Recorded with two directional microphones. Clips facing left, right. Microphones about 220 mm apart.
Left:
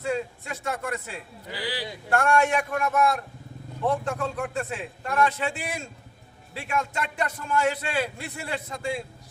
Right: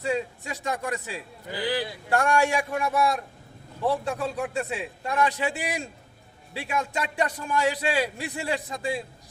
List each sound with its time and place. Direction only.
0.0 s a man's voice: 15° right (ahead or behind)